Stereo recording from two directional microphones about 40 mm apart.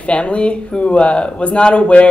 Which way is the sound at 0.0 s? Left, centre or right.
Left.